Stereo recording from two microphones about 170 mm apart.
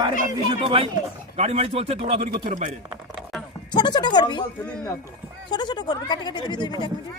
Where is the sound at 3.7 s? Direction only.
25° left (ahead or behind).